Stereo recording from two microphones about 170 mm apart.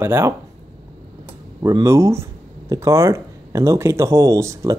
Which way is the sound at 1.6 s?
20° right (ahead or behind).